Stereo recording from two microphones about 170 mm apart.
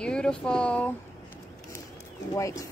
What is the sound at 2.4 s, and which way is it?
Speech, 20° left (ahead or behind).